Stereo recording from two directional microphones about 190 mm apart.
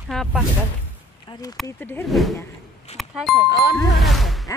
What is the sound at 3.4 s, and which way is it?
Speech, 65° left (ahead or behind).